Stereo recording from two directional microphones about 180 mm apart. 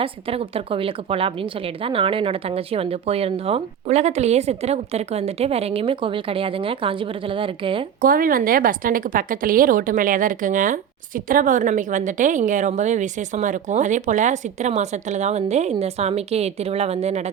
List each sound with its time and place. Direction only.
0.0 s a woman's voice: 30° right (ahead or behind)
8.0 s a woman's voice: 50° right (ahead or behind)